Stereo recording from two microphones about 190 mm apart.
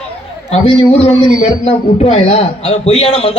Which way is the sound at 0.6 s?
30° left (ahead or behind).